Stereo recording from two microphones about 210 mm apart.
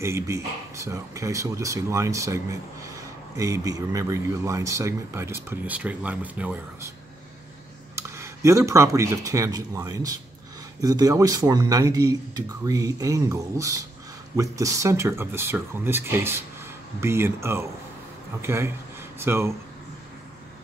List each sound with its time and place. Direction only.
0.0 s speech: 15° right (ahead or behind)
7.9 s speech: 15° right (ahead or behind)